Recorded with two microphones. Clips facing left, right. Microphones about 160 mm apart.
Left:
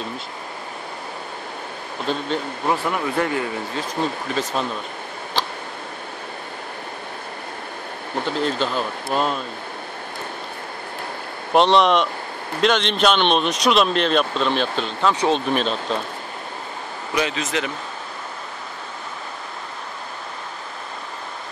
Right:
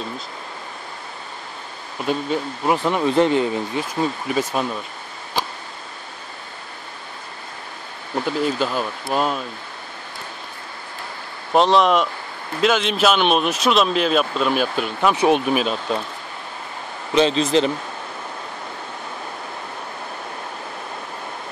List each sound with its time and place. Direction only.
2.0 s speech: 10° right (ahead or behind)
2.8 s speech: 20° right (ahead or behind)
4.4 s speech: 10° right (ahead or behind)
8.5 s speech: 10° right (ahead or behind)
11.5 s speech: centre (ahead or behind)
17.1 s speech: 30° right (ahead or behind)